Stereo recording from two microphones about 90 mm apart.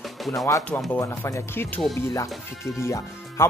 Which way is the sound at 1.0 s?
35° left (ahead or behind).